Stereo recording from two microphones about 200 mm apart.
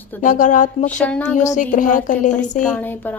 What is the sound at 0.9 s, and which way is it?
Speech, 5° left (ahead or behind).